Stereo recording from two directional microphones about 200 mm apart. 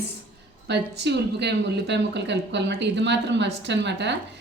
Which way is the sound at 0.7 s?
60° right (ahead or behind).